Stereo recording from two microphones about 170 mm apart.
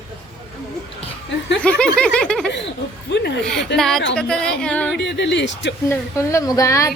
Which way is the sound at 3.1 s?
90° left.